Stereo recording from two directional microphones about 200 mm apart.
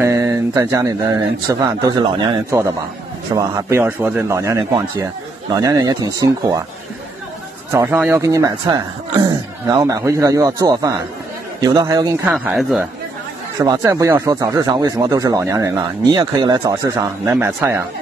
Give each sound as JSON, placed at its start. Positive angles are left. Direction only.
{"t": 0.0, "sound": "speech", "side_deg": -15}
{"t": 7.7, "sound": "speech", "side_deg": -15}
{"t": 13.6, "sound": "speech", "side_deg": -15}